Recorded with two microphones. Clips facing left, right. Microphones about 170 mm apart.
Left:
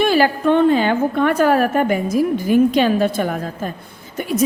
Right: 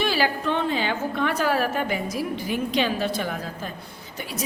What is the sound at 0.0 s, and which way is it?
A woman's voice, 50° left (ahead or behind).